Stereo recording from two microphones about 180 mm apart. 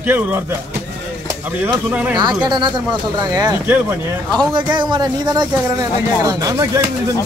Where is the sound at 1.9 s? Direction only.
10° right (ahead or behind).